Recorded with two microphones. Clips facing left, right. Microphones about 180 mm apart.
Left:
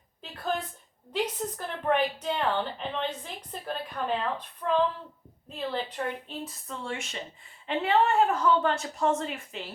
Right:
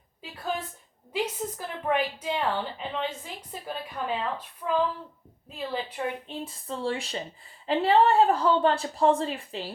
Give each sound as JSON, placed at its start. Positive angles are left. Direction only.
{"t": 0.2, "sound": "a sound", "side_deg": -5}
{"t": 1.1, "sound": "a woman's voice", "side_deg": -10}
{"t": 6.2, "sound": "a woman's voice", "side_deg": -30}